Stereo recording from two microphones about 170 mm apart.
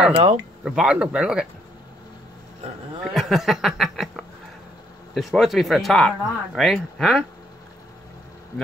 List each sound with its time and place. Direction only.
0.1 s speech: 35° right (ahead or behind)
0.7 s speech: 5° right (ahead or behind)
3.0 s speech: centre (ahead or behind)